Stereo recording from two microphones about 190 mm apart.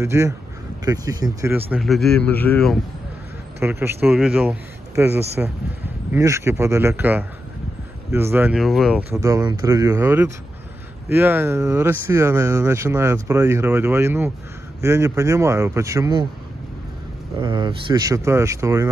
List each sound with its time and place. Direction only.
0.0 s speech: 15° right (ahead or behind)
1.7 s a man's voice: centre (ahead or behind)
3.5 s a man's voice: 10° right (ahead or behind)
9.2 s speech: 20° right (ahead or behind)
17.4 s speech: 25° right (ahead or behind)